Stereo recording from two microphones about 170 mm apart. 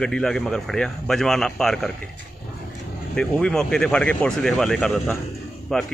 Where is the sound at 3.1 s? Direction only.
5° left (ahead or behind).